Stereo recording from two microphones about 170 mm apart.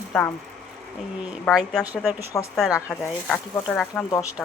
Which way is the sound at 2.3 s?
15° left (ahead or behind).